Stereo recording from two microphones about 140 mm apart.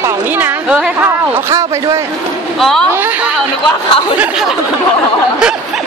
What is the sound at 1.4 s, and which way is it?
Speech, 20° right (ahead or behind).